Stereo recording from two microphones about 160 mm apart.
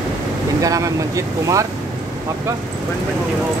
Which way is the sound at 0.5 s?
20° right (ahead or behind).